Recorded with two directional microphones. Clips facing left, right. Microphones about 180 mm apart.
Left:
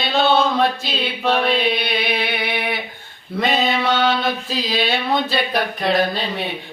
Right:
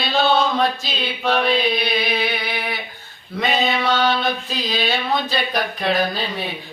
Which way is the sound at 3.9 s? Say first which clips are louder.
Left 1 dB; 25° left (ahead or behind).